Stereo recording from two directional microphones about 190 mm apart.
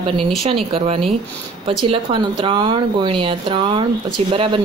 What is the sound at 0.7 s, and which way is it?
Speech, 30° right (ahead or behind).